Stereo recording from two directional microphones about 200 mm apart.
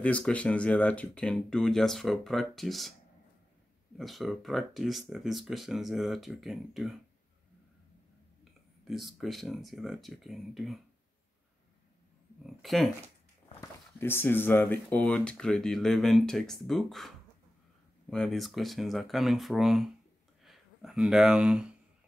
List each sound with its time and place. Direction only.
0.0 s speech: 5° left (ahead or behind)
4.0 s speech: centre (ahead or behind)
8.8 s speech: centre (ahead or behind)
12.4 s speech: centre (ahead or behind)
13.6 s speech: 10° left (ahead or behind)
18.1 s speech: centre (ahead or behind)